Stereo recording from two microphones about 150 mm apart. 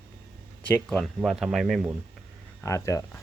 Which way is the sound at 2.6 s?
20° left (ahead or behind).